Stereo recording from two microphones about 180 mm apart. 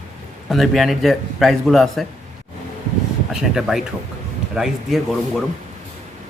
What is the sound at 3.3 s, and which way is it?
A man's voice, centre (ahead or behind).